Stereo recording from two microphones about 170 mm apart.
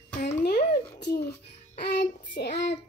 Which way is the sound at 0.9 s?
85° left.